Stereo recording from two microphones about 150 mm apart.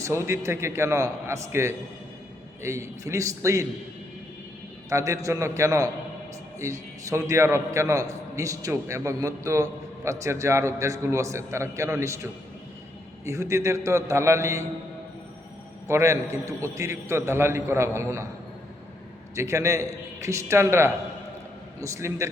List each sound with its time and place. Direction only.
0.0 s a man's voice: 20° right (ahead or behind)
4.9 s a man's voice: 20° right (ahead or behind)
15.9 s a man's voice: 20° right (ahead or behind)
19.4 s a man's voice: 20° right (ahead or behind)